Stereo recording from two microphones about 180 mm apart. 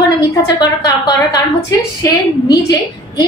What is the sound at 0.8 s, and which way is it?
A woman's voice, 20° left (ahead or behind).